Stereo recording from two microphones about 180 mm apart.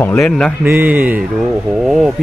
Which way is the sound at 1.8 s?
Centre (ahead or behind).